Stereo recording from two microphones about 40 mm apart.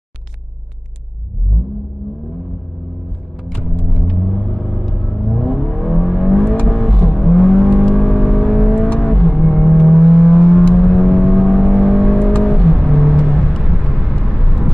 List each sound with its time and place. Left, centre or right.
4.2 s vehicle: centre
6.4 s vehicle: left
6.9 s vehicle: centre
8.7 s vehicle: left
9.0 s vehicle: centre
9.8 s vehicle: centre
11.5 s vehicle: centre
12.2 s vehicle: left
12.4 s vehicle: centre